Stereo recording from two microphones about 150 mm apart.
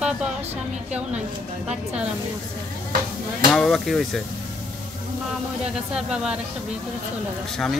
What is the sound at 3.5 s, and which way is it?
Speech, centre (ahead or behind).